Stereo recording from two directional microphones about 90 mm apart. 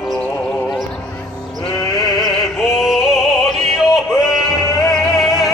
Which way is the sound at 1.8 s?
35° left (ahead or behind).